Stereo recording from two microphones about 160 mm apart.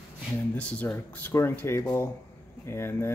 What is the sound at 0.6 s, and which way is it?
Speech, 10° left (ahead or behind).